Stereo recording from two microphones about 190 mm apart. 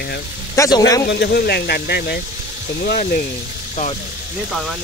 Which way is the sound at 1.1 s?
60° left (ahead or behind).